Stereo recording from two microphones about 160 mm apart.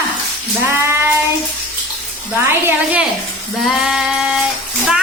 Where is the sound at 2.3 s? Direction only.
10° right (ahead or behind).